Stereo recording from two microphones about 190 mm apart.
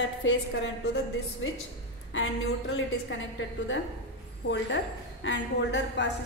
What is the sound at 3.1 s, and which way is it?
Speech, 90° left.